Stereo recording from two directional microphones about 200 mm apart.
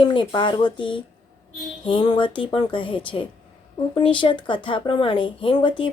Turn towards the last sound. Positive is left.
turn(degrees=25)  # may be behind; listen again after turning